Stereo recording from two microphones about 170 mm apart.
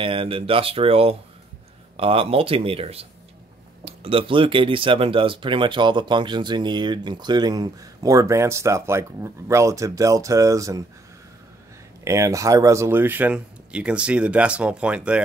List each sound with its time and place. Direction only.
0.0 s speech: 30° right (ahead or behind)
12.0 s speech: 15° right (ahead or behind)